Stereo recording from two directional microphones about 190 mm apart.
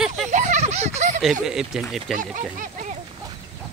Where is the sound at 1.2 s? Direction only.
Centre (ahead or behind).